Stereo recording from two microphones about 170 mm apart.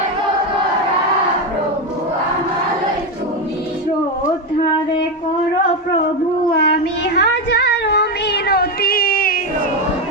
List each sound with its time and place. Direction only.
6.6 s child singing: 75° left (ahead or behind); by 9.4 s 55° left (ahead or behind)